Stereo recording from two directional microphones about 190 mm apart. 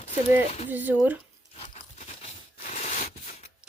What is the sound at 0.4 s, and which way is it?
Speech, 35° left (ahead or behind).